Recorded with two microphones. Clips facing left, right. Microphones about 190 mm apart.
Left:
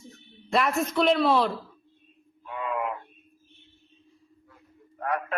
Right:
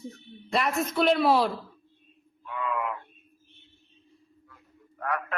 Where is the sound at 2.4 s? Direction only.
25° left (ahead or behind).